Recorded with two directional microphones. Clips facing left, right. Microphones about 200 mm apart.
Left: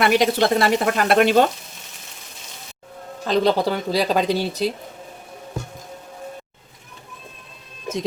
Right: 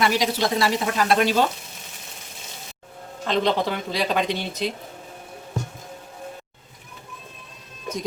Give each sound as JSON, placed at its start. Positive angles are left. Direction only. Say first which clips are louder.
{"t": 0.0, "sound": "speech", "louder": "left 5 dB", "side_deg": 55}
{"t": 3.2, "sound": "speech", "louder": "left 4 dB", "side_deg": 35}